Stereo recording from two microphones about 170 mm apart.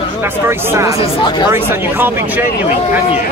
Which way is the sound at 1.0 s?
30° left (ahead or behind).